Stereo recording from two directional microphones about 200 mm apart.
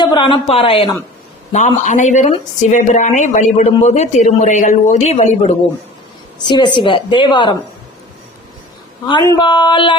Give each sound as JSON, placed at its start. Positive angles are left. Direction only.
{"t": 0.0, "sound": "a woman's voice", "side_deg": 20}
{"t": 1.5, "sound": "a woman's voice", "side_deg": 35}
{"t": 9.2, "sound": "a woman's voice", "side_deg": 20}